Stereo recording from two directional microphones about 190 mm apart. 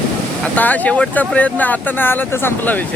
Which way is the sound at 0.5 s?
10° left (ahead or behind).